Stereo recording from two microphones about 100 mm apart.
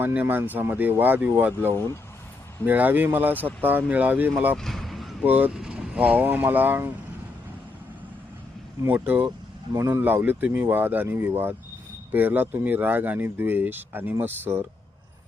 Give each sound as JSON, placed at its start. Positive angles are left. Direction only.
{"t": 0.0, "sound": "speech", "side_deg": -20}
{"t": 1.7, "sound": "speech", "side_deg": 20}
{"t": 2.6, "sound": "speech", "side_deg": -20}
{"t": 4.5, "sound": "a sound", "side_deg": 5}
{"t": 5.2, "sound": "speech", "side_deg": -15}
{"t": 8.9, "sound": "speech", "side_deg": -20}
{"t": 9.7, "sound": "speech", "side_deg": -30}
{"t": 10.2, "sound": "speech", "side_deg": -20}